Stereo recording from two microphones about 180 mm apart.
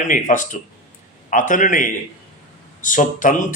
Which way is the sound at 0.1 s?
45° left (ahead or behind).